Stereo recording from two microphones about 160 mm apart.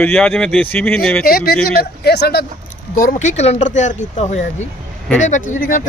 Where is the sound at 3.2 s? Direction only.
45° left (ahead or behind).